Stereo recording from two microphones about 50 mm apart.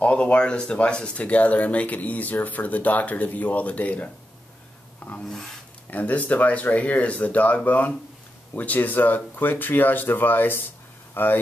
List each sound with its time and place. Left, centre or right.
0.0 s speech: left
5.2 s speech: centre
5.9 s speech: left